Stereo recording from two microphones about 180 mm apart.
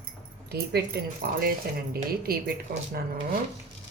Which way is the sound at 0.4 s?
60° right (ahead or behind).